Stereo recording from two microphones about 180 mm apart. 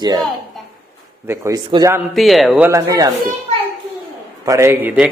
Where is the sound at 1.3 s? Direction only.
20° right (ahead or behind).